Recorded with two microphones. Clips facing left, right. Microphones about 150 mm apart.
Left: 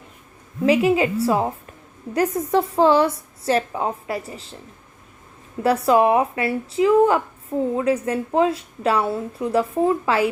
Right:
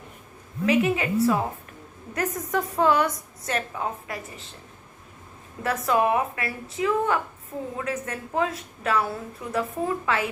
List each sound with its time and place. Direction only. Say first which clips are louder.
0.6 s a woman's voice: left 5 dB; 30° left (ahead or behind)
5.6 s a woman's voice: left 6 dB; 30° left (ahead or behind)